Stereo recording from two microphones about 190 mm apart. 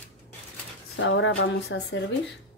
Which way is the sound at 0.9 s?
85° left.